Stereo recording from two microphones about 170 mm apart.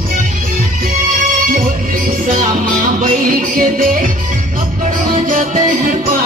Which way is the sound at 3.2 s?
55° right (ahead or behind).